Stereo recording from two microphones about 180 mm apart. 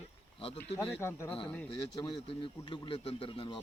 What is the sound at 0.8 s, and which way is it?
Speech, 10° left (ahead or behind).